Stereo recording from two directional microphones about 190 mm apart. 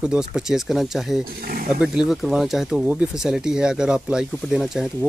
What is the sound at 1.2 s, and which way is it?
Speech, 50° right (ahead or behind).